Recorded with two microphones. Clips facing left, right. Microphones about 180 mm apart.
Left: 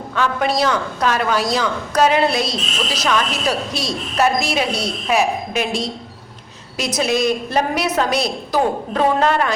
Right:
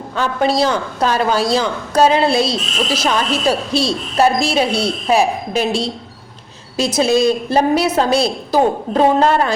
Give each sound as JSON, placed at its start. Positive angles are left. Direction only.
{"t": 0.2, "sound": "a woman's voice", "side_deg": -30}